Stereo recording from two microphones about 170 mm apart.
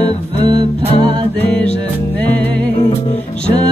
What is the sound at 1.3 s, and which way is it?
Music, 10° left (ahead or behind).